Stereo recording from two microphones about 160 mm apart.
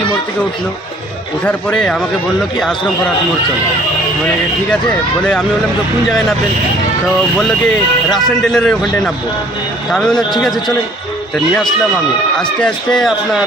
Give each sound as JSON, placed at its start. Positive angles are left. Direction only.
{"t": 1.5, "sound": "a man's voice", "side_deg": 5}
{"t": 8.1, "sound": "a man's voice", "side_deg": 0}
{"t": 12.4, "sound": "a man's voice", "side_deg": 5}